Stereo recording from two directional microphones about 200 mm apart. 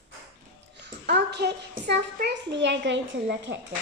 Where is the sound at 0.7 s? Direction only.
60° right (ahead or behind).